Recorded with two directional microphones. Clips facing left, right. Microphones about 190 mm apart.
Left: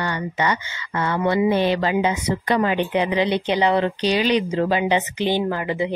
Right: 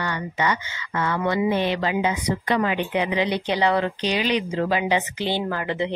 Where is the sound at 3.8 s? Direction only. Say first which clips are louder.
Left 4 dB; 35° left (ahead or behind).